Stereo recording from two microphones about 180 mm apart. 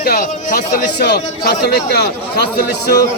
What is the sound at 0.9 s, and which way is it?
A man's voice, 65° left (ahead or behind).